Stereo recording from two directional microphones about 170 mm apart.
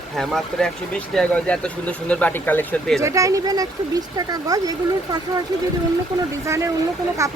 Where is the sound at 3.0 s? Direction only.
20° right (ahead or behind).